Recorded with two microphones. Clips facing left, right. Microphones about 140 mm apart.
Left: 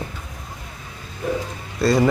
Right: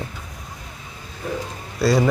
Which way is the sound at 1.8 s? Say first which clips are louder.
Even; centre (ahead or behind).